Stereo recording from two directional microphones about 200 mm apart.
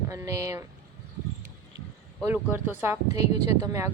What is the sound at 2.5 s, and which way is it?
Speech, 10° right (ahead or behind).